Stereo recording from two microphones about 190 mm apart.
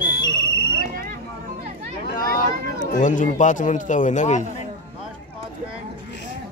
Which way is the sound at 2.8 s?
45° left (ahead or behind).